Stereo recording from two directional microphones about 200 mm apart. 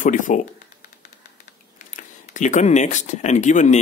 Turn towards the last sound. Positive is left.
turn(degrees=40)  # may be behind; listen again after turning